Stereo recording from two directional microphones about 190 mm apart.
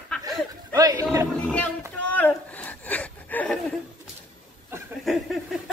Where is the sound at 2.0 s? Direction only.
10° left (ahead or behind).